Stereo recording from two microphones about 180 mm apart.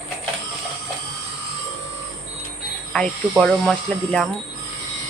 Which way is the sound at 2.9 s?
5° left (ahead or behind).